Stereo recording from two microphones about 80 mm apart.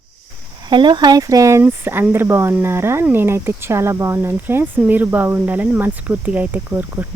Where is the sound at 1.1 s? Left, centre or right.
Right.